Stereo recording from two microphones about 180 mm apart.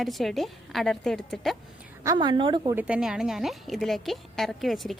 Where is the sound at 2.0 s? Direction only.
20° right (ahead or behind).